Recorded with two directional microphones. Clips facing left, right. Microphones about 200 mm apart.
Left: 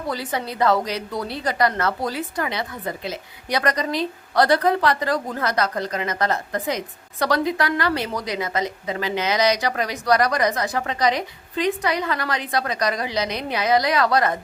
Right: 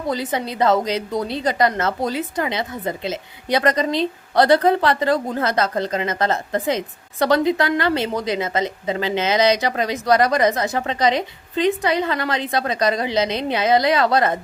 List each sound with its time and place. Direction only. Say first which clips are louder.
0.1 s a woman's voice: right 4 dB; 20° right (ahead or behind)